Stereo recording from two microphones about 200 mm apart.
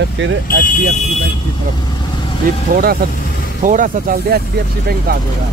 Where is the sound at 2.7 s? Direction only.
50° right (ahead or behind).